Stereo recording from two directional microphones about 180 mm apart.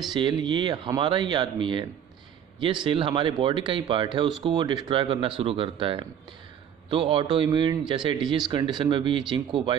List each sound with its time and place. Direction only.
0.1 s speech: 25° right (ahead or behind)